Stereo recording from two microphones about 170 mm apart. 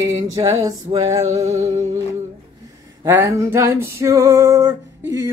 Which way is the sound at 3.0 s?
15° right (ahead or behind).